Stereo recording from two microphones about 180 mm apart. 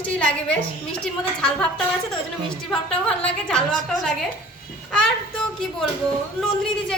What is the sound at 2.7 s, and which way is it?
Speech, 5° left (ahead or behind).